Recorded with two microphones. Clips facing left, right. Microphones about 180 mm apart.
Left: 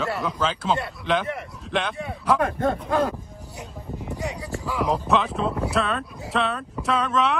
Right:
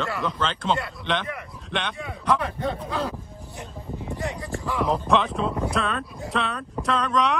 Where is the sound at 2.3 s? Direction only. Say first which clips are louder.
Left 4 dB; 50° left (ahead or behind).